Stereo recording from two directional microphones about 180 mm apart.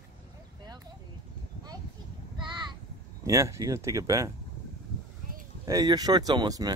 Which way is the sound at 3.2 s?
15° right (ahead or behind).